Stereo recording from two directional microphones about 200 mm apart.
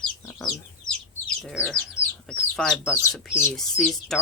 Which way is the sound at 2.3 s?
5° left (ahead or behind).